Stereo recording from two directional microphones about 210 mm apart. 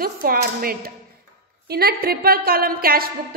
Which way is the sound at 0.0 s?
45° right (ahead or behind).